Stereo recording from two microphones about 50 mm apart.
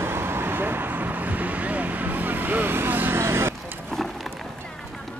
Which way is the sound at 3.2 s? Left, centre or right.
Right.